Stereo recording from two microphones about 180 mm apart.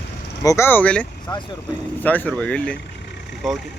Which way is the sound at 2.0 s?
10° left (ahead or behind).